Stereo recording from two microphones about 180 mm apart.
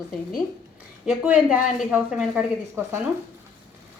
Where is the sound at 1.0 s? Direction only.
10° right (ahead or behind).